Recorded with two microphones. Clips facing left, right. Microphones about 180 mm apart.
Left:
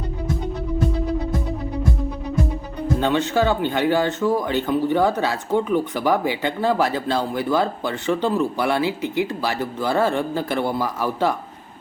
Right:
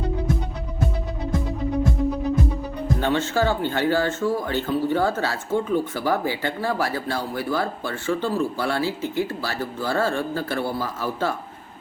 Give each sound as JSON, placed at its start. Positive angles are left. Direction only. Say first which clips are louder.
{"t": 3.0, "sound": "speech", "louder": "left 2 dB", "side_deg": 15}